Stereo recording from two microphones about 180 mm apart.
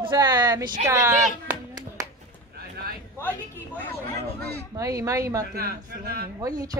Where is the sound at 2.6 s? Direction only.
60° right (ahead or behind).